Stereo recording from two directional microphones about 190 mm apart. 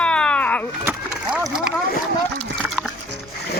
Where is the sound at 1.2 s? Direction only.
5° right (ahead or behind).